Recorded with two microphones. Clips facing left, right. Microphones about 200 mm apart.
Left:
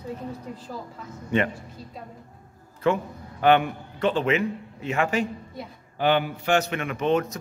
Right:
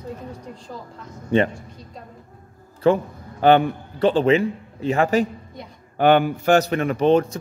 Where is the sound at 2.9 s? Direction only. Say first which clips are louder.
Right 6 dB; 35° right (ahead or behind).